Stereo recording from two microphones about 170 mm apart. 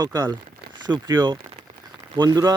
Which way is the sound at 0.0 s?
25° right (ahead or behind).